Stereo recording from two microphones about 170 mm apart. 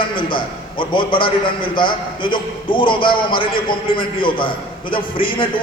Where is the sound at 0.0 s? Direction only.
30° left (ahead or behind).